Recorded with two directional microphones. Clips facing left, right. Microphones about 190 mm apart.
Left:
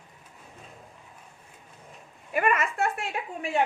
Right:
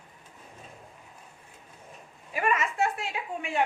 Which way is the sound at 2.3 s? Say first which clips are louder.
Left 2 dB; 55° left (ahead or behind).